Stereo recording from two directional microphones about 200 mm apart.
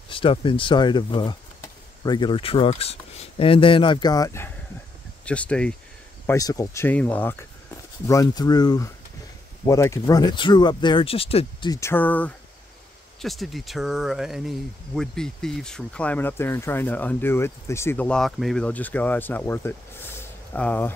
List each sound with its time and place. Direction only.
0.1 s speech: 25° left (ahead or behind); by 5.8 s 5° left (ahead or behind)
6.2 s speech: 15° left (ahead or behind)
11.7 s speech: 10° left (ahead or behind)
20.2 s a sound: 10° left (ahead or behind)